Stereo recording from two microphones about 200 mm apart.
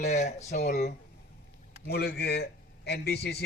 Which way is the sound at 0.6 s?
55° left (ahead or behind).